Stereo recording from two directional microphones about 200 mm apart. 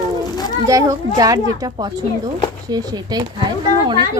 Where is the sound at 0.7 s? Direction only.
15° right (ahead or behind).